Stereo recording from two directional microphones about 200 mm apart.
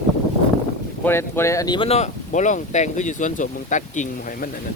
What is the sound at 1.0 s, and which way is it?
Speech, 10° left (ahead or behind).